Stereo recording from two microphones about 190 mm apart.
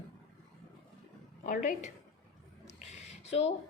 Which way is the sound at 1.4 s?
40° left (ahead or behind).